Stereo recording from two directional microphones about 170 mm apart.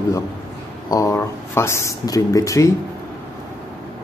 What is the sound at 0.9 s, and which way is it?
Speech, 20° left (ahead or behind).